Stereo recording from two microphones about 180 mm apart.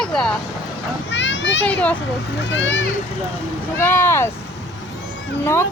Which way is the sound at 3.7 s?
15° left (ahead or behind).